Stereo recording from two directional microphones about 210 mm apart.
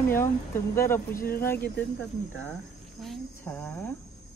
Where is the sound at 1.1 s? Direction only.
45° left (ahead or behind).